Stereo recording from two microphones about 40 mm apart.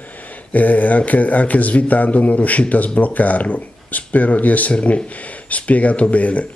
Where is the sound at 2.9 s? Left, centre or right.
Left.